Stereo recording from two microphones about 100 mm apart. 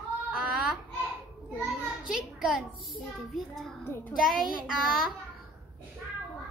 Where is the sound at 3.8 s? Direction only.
20° left (ahead or behind).